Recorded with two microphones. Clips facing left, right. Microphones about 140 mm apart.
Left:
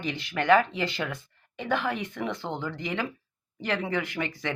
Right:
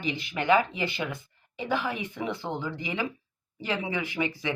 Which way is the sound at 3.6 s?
10° right (ahead or behind).